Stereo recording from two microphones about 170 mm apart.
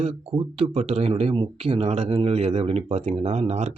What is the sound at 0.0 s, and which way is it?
Speech, 35° right (ahead or behind).